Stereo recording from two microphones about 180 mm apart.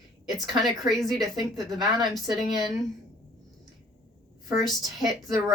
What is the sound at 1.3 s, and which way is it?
Speech, 20° right (ahead or behind).